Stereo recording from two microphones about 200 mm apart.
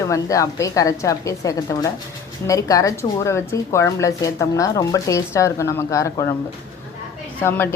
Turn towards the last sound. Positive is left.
turn(degrees=10)  # may be behind; listen again after turning